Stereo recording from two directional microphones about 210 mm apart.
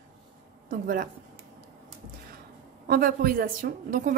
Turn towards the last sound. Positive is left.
turn(degrees=-40)  # may be behind; listen again after turning